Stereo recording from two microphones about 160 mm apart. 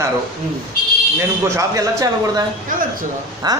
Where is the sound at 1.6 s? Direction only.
20° right (ahead or behind).